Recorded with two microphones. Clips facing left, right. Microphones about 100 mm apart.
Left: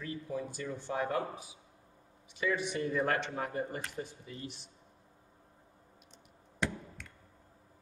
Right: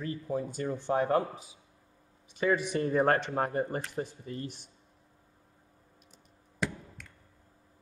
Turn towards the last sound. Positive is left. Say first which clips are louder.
# right 1 dB
turn(degrees=0)  # may be behind; listen again after turning